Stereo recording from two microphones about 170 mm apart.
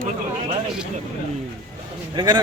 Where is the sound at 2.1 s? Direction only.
25° right (ahead or behind).